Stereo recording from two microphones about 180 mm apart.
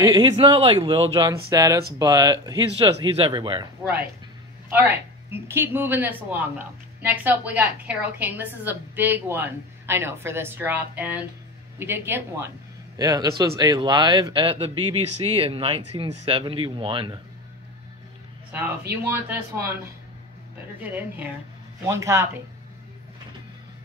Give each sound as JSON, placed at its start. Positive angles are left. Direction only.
{"t": 0.0, "sound": "speech", "side_deg": -20}
{"t": 4.6, "sound": "a woman's voice", "side_deg": -10}
{"t": 18.5, "sound": "a woman's voice", "side_deg": -10}
{"t": 20.8, "sound": "a woman's voice", "side_deg": -10}